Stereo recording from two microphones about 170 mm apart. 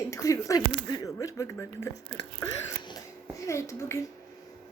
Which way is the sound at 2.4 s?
25° left (ahead or behind).